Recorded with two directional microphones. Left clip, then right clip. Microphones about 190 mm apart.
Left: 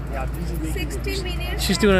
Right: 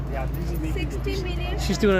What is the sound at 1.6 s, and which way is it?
Speech, 15° left (ahead or behind).